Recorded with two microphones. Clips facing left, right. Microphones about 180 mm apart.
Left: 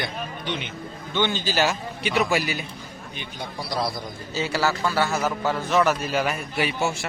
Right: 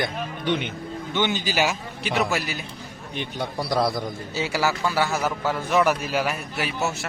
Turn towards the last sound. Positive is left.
turn(degrees=0)  # may be behind; listen again after turning